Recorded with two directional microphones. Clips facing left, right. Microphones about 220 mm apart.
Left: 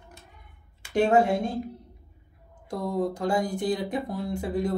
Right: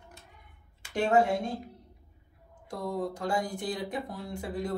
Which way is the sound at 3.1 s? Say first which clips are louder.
Left 5 dB; 20° left (ahead or behind).